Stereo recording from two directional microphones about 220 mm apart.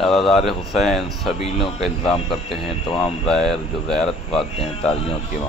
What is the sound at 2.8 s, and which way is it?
Speech, 25° left (ahead or behind).